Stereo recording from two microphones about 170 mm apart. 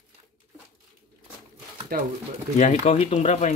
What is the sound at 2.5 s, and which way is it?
Speech, 40° left (ahead or behind).